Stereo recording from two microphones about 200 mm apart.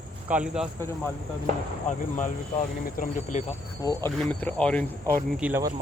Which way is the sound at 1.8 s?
40° left (ahead or behind).